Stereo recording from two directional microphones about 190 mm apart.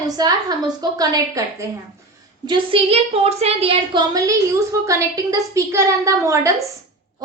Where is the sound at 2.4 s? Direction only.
25° right (ahead or behind).